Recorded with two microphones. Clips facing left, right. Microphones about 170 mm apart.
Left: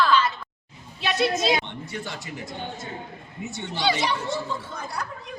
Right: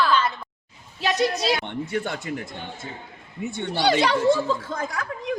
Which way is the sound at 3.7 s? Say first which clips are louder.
Right 4 dB; 40° right (ahead or behind).